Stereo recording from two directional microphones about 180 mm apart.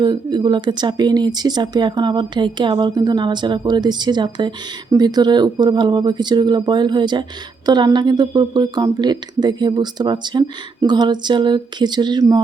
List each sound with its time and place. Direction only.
0.0 s speech: 25° right (ahead or behind)